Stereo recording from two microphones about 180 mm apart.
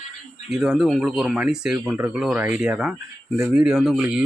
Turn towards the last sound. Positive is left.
turn(degrees=-5)  # may be behind; listen again after turning